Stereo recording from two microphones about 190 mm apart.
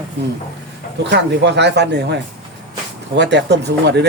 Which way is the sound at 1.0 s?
65° right (ahead or behind).